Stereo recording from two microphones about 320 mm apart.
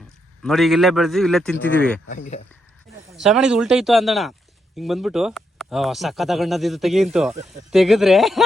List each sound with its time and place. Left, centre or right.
0.4 s speech: centre
2.0 s speech: left
3.1 s speech: centre